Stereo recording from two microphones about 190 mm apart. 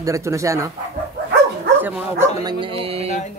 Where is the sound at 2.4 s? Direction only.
25° right (ahead or behind).